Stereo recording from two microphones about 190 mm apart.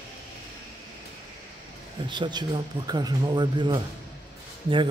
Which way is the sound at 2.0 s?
25° right (ahead or behind).